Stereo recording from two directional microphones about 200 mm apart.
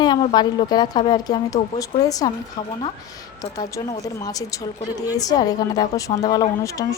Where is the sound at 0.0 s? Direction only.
25° left (ahead or behind).